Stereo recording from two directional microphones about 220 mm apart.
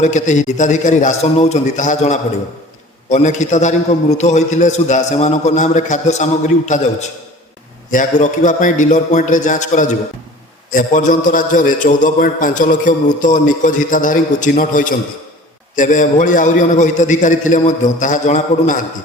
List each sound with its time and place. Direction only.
0.0 s a man's voice: 35° left (ahead or behind)